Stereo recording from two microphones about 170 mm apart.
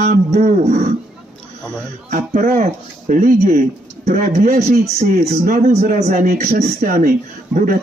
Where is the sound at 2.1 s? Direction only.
45° right (ahead or behind).